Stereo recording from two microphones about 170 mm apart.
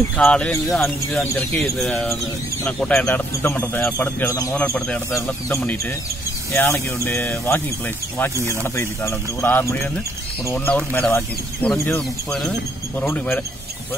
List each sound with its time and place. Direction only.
0.2 s speech: 5° left (ahead or behind)
4.6 s speech: 5° left (ahead or behind)
6.5 s speech: 15° left (ahead or behind)